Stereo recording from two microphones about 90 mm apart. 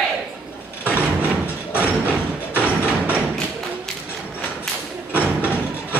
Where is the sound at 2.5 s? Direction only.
20° right (ahead or behind).